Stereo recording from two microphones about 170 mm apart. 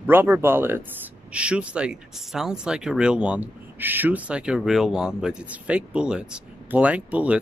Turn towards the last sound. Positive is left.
turn(degrees=-10)  # may be behind; listen again after turning